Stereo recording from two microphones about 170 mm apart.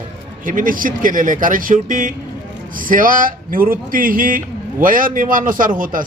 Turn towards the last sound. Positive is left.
turn(degrees=-55)  # may be behind; listen again after turning